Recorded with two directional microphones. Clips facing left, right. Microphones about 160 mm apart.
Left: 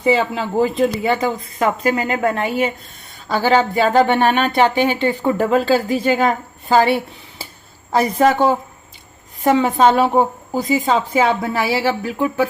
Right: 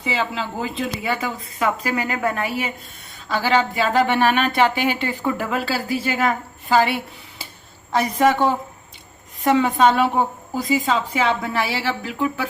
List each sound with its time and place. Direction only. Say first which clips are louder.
0.0 s speech: left 7 dB; 45° left (ahead or behind)
1.0 s a woman's voice: left 6 dB; 30° left (ahead or behind)